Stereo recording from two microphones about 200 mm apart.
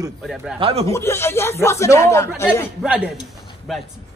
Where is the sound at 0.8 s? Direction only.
15° left (ahead or behind).